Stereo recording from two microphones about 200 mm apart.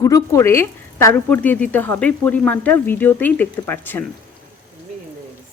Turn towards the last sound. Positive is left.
turn(degrees=10)  # may be behind; listen again after turning